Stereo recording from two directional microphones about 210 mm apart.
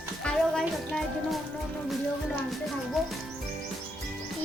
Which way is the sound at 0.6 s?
Centre (ahead or behind).